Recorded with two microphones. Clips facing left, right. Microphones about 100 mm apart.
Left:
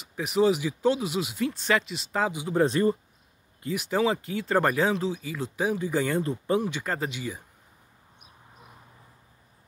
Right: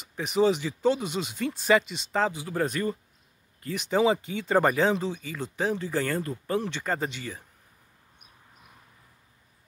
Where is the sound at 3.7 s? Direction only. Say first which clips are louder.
Right 2 dB; 5° left (ahead or behind).